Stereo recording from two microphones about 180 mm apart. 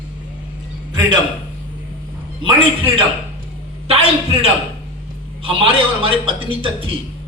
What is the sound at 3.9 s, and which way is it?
A man's voice, 35° right (ahead or behind).